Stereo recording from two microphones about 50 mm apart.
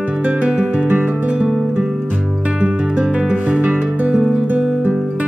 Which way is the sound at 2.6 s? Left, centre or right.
Right.